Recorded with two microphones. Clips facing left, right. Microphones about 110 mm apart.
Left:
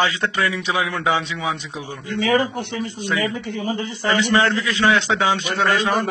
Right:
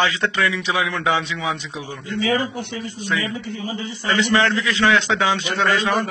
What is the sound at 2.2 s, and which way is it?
A man's voice, 55° left (ahead or behind).